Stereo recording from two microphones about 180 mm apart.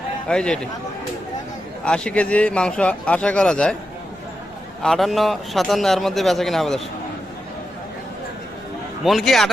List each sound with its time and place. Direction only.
0.3 s a man's voice: 5° left (ahead or behind)
1.8 s a man's voice: 5° left (ahead or behind)
4.8 s a man's voice: centre (ahead or behind)
9.0 s a man's voice: centre (ahead or behind)